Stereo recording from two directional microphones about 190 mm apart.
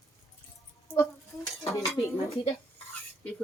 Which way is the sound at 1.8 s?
Centre (ahead or behind).